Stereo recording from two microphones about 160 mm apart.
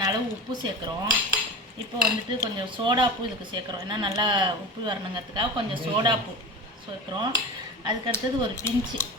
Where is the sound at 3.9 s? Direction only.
25° right (ahead or behind).